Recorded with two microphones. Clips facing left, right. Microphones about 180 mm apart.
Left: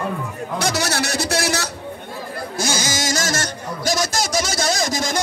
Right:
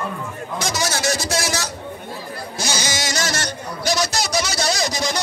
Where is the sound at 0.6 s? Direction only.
65° left (ahead or behind).